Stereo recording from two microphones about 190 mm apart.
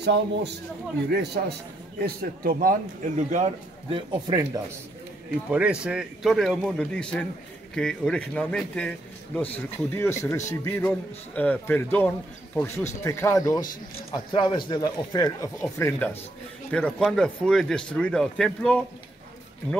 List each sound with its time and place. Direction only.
0.0 s a man's voice: 60° right (ahead or behind)
2.0 s a man's voice: 50° right (ahead or behind)
3.9 s speech: 20° right (ahead or behind)
5.5 s a man's voice: 5° right (ahead or behind)